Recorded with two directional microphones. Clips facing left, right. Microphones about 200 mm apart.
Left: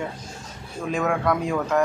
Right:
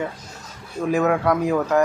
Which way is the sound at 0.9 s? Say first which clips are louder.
Right 4 dB; 10° right (ahead or behind).